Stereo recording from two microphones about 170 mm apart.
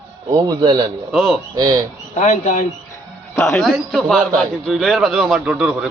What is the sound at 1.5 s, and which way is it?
Speech, 20° right (ahead or behind).